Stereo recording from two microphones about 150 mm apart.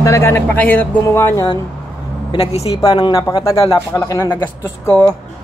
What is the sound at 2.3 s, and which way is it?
Speech, 45° left (ahead or behind).